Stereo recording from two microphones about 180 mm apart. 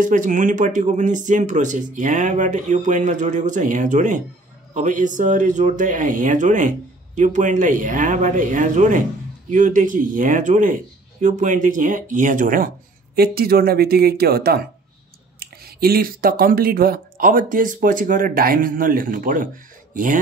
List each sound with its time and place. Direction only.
0.0 s speech: 45° right (ahead or behind)